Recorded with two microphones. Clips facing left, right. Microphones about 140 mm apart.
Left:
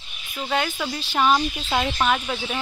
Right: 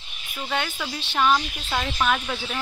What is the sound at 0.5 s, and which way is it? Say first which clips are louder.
Speech: left 4 dB; 5° left (ahead or behind).